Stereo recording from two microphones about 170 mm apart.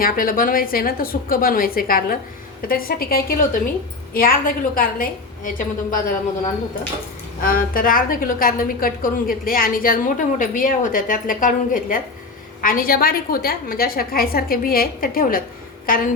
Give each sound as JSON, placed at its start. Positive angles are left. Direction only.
{"t": 0.0, "sound": "a woman's voice", "side_deg": 55}
{"t": 7.4, "sound": "a woman's voice", "side_deg": 55}